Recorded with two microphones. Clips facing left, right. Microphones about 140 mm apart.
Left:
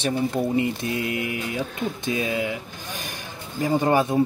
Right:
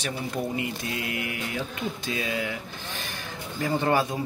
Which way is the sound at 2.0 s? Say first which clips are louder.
Left 6 dB; 20° left (ahead or behind).